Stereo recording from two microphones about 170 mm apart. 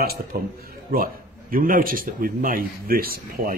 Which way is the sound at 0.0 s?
65° right (ahead or behind).